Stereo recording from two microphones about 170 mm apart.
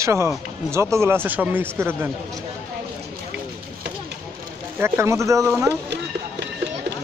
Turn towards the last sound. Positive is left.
turn(degrees=-75)  # may be behind; listen again after turning